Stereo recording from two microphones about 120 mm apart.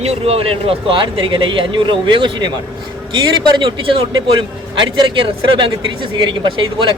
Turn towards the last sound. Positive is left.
turn(degrees=-40)  # may be behind; listen again after turning